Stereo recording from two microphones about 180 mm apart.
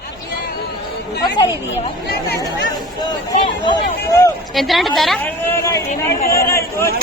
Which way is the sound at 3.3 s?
25° left (ahead or behind).